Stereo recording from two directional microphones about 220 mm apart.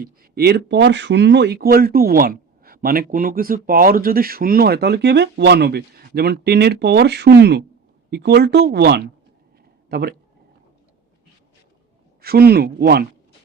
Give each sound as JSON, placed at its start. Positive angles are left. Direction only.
{"t": 0.0, "sound": "speech", "side_deg": -45}
{"t": 12.2, "sound": "speech", "side_deg": -45}